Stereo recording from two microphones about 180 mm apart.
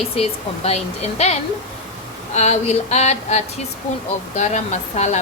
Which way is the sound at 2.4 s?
40° left (ahead or behind).